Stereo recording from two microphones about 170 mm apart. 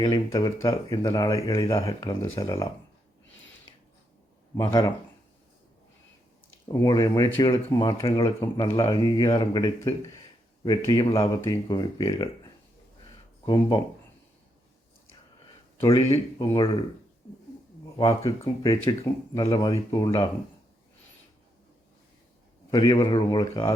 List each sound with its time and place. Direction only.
0.0 s speech: 25° left (ahead or behind)
4.5 s speech: 20° left (ahead or behind)
6.7 s speech: 20° left (ahead or behind)
8.0 s speech: 35° left (ahead or behind)
13.4 s speech: 25° left (ahead or behind)
15.9 s speech: 40° left (ahead or behind)
17.9 s speech: 25° left (ahead or behind)
22.7 s speech: 20° left (ahead or behind)